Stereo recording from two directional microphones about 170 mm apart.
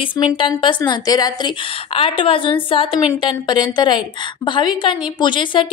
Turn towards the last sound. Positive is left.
turn(degrees=30)  # may be behind; listen again after turning